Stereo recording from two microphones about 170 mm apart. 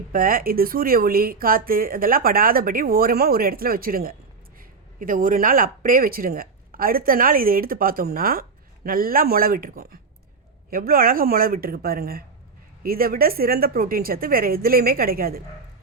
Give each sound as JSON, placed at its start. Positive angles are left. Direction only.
{"t": 0.1, "sound": "speech", "side_deg": -55}